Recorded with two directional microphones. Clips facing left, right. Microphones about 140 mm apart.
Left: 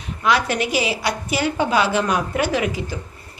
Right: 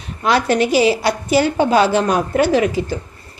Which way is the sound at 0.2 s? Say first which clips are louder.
Right 4 dB; 35° right (ahead or behind).